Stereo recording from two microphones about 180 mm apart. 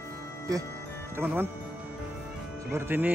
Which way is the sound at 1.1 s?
10° right (ahead or behind).